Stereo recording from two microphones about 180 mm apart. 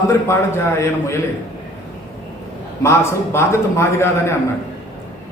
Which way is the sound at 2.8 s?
15° left (ahead or behind).